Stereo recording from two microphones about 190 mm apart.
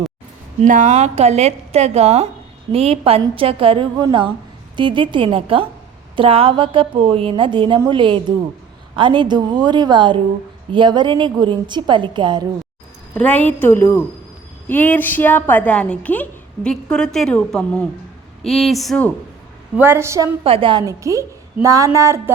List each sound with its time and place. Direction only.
0.6 s a woman's voice: 40° right (ahead or behind); by 12.5 s 25° right (ahead or behind)
13.1 s a woman's voice: 10° left (ahead or behind)
19.7 s a woman's voice: 10° right (ahead or behind)
20.4 s a woman's voice: 30° right (ahead or behind)